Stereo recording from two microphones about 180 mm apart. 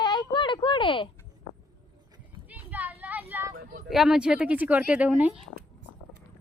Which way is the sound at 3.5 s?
50° right (ahead or behind).